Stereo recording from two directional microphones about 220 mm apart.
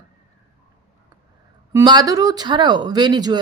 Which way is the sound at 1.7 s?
20° right (ahead or behind).